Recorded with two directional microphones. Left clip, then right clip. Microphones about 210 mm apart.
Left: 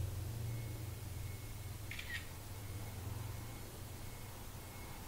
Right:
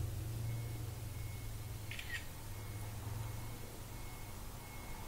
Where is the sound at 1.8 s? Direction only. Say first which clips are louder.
Even; centre (ahead or behind).